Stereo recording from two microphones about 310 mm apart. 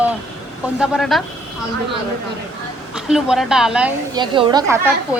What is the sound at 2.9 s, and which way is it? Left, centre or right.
A woman's voice, centre.